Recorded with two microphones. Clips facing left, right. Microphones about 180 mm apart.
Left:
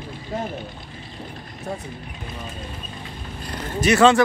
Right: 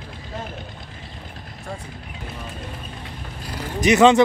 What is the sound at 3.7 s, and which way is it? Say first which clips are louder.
Speech: right 1 dB; 15° right (ahead or behind).